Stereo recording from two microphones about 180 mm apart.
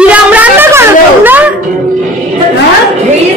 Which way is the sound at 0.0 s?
10° right (ahead or behind).